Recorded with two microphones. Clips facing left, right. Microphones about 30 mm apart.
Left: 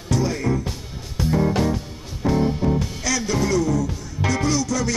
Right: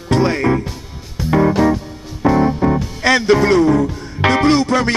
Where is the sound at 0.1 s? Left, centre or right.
Right.